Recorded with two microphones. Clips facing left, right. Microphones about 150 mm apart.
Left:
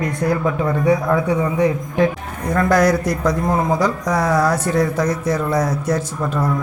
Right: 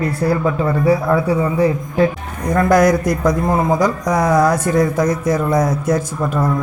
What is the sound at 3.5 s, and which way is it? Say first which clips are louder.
Speech: right 2 dB; 5° right (ahead or behind).